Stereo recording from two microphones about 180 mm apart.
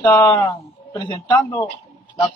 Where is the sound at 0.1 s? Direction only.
20° left (ahead or behind).